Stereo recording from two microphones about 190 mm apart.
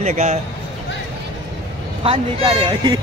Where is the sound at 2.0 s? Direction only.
30° right (ahead or behind).